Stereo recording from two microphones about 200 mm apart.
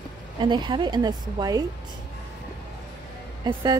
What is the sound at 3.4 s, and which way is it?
Speech, 20° right (ahead or behind).